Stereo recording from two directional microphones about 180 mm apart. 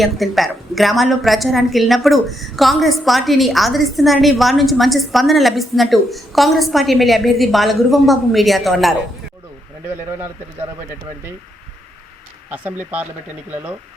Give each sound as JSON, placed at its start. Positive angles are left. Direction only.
{"t": 0.0, "sound": "a woman's voice", "side_deg": 0}
{"t": 12.5, "sound": "speech", "side_deg": -10}